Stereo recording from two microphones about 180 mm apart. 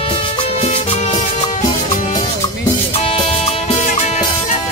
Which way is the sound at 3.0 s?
35° left (ahead or behind).